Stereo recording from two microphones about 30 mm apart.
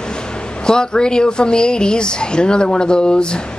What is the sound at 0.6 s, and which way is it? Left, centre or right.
Speech, left.